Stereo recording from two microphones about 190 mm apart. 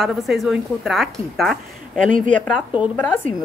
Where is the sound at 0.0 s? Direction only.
Centre (ahead or behind).